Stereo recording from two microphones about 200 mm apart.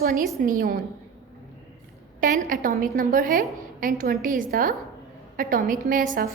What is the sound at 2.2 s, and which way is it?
A woman's voice, 40° right (ahead or behind).